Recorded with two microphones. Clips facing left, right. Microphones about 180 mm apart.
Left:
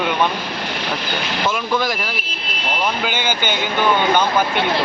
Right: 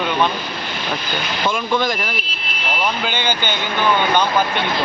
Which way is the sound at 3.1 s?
10° left (ahead or behind).